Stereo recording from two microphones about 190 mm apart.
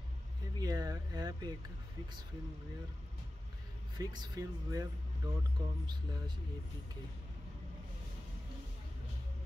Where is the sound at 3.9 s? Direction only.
20° right (ahead or behind).